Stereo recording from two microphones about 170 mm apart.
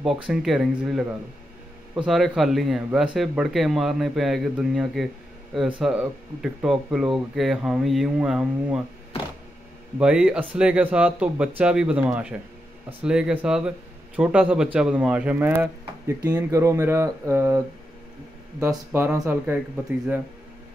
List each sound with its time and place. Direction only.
0.0 s speech: centre (ahead or behind)
2.0 s speech: centre (ahead or behind)
9.9 s a man's voice: 5° right (ahead or behind)
18.9 s a man's voice: 10° right (ahead or behind)